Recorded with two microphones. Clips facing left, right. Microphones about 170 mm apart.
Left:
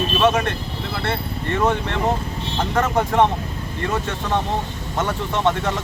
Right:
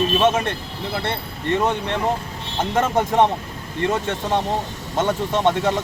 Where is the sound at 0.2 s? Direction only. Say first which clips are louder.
Even; 20° right (ahead or behind).